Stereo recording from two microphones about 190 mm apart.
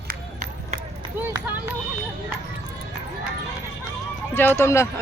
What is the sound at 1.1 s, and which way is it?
Run, 10° right (ahead or behind).